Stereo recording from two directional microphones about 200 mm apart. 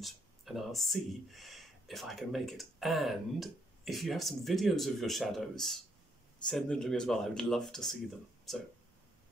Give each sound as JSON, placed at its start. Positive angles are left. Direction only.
{"t": 0.0, "sound": "speech", "side_deg": 0}